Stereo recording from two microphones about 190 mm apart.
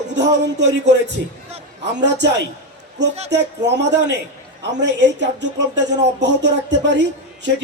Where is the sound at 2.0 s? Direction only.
65° right (ahead or behind).